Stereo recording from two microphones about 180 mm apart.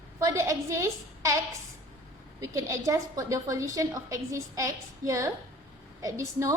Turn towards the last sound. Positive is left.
turn(degrees=-15)  # may be behind; listen again after turning